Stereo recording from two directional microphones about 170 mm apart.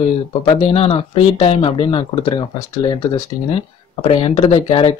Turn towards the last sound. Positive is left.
turn(degrees=35)  # may be behind; listen again after turning